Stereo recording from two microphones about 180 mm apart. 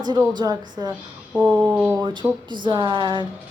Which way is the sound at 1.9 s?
25° right (ahead or behind).